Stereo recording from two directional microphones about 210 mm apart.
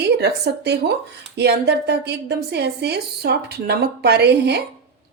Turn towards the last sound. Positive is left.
turn(degrees=-50)  # may be behind; listen again after turning